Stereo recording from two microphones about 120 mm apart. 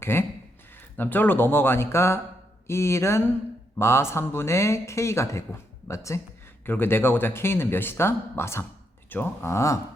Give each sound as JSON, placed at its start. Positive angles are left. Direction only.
{"t": 0.0, "sound": "speech", "side_deg": 20}